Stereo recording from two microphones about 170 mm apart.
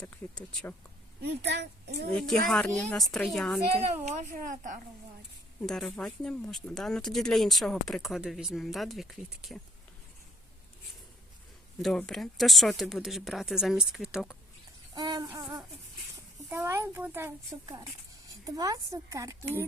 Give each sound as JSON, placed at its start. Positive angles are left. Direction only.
{"t": 0.0, "sound": "speech", "side_deg": 5}
{"t": 1.2, "sound": "speech", "side_deg": -85}
{"t": 2.0, "sound": "speech", "side_deg": 5}
{"t": 3.9, "sound": "a woman's voice", "side_deg": -40}
{"t": 5.6, "sound": "speech", "side_deg": 5}
{"t": 11.8, "sound": "speech", "side_deg": 5}
{"t": 14.9, "sound": "a sound", "side_deg": -25}
{"t": 16.5, "sound": "speech", "side_deg": -15}